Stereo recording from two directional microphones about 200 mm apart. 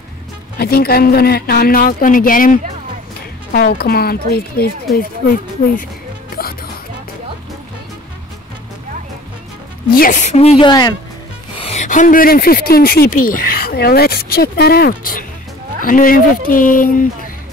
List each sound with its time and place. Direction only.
0.6 s speech: 50° left (ahead or behind)
9.9 s a woman's voice: 40° left (ahead or behind)
10.7 s speech: 20° left (ahead or behind)
11.5 s speech: 30° left (ahead or behind)